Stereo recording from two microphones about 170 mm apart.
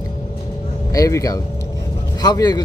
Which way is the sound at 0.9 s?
20° left (ahead or behind).